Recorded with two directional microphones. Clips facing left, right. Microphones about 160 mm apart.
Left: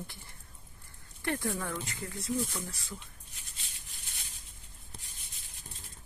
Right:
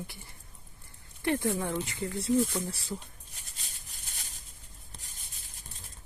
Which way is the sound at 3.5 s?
40° right (ahead or behind).